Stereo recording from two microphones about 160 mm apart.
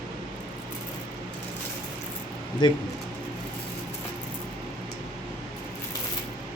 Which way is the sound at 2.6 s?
30° left (ahead or behind).